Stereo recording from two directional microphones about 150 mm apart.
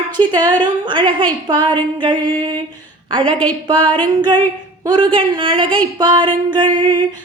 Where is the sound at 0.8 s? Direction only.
35° right (ahead or behind).